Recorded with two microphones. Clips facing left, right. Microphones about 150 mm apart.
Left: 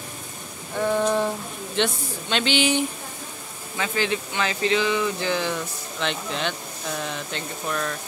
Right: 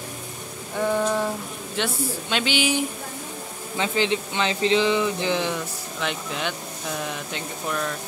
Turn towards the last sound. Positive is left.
turn(degrees=-15)  # may be behind; listen again after turning